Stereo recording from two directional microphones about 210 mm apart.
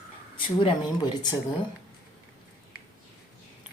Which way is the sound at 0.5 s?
20° left (ahead or behind).